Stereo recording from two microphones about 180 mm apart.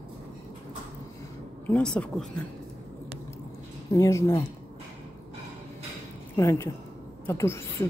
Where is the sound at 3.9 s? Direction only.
20° left (ahead or behind).